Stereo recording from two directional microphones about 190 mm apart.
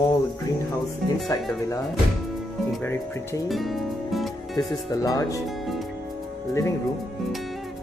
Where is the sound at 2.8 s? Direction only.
10° left (ahead or behind).